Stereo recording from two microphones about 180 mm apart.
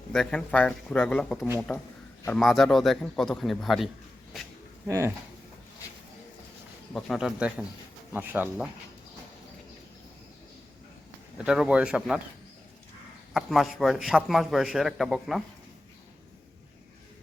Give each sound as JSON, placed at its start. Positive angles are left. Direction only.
{"t": 0.1, "sound": "a man's voice", "side_deg": 5}
{"t": 4.9, "sound": "speech", "side_deg": -15}
{"t": 6.9, "sound": "a man's voice", "side_deg": 0}
{"t": 11.3, "sound": "a man's voice", "side_deg": -5}
{"t": 13.3, "sound": "a man's voice", "side_deg": 0}